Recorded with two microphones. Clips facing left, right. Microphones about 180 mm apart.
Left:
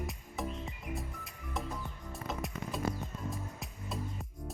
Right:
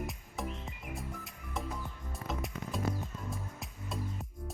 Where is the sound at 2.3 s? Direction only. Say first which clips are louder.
Even; centre (ahead or behind).